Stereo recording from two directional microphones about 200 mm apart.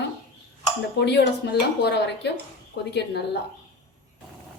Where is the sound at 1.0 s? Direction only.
60° left (ahead or behind).